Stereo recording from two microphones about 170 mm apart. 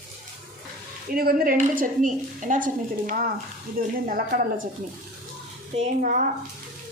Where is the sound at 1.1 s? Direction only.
60° right (ahead or behind).